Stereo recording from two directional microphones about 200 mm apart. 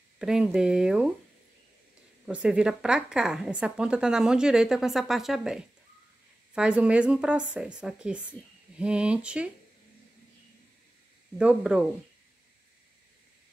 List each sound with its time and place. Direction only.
0.2 s a woman's voice: centre (ahead or behind)
2.2 s a woman's voice: 5° right (ahead or behind)
11.3 s a woman's voice: 5° right (ahead or behind)